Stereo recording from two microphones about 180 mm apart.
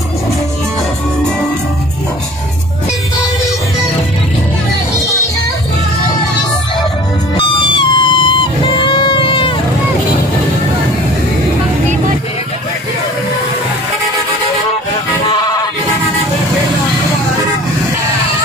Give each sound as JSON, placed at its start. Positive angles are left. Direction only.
{"t": 7.3, "sound": "music", "side_deg": 25}